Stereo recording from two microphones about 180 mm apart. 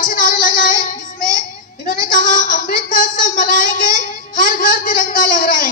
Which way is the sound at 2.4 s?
50° left (ahead or behind).